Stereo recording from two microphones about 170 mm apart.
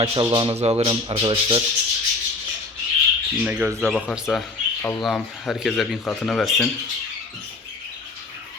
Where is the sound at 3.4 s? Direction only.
10° right (ahead or behind).